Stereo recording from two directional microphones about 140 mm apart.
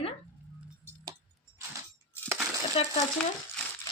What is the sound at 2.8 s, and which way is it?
Speech, 45° left (ahead or behind).